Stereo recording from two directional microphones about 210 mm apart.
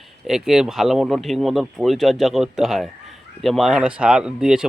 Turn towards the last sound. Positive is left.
turn(degrees=-5)  # may be behind; listen again after turning